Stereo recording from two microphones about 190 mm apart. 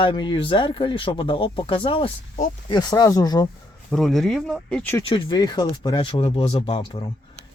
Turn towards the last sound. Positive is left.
turn(degrees=25)  # may be behind; listen again after turning